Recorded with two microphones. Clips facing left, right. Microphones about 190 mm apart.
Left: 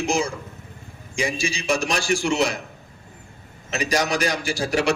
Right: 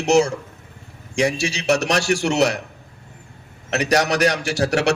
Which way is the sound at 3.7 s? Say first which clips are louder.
Right 4 dB; 70° right (ahead or behind).